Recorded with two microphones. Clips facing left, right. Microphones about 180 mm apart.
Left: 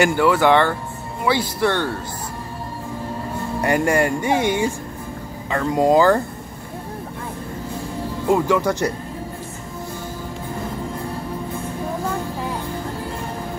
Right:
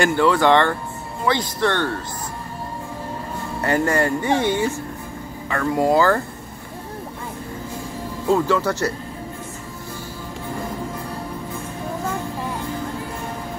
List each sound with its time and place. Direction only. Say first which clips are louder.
0.0 s speech: left 1 dB; 10° left (ahead or behind)
3.6 s speech: left 1 dB; 10° left (ahead or behind)
8.3 s speech: left 1 dB; 15° left (ahead or behind)